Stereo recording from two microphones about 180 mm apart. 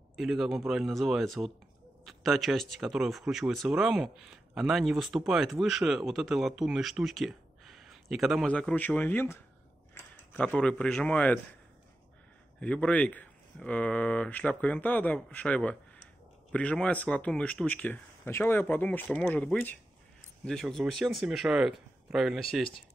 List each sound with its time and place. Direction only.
0.1 s speech: centre (ahead or behind)
12.5 s speech: 5° left (ahead or behind)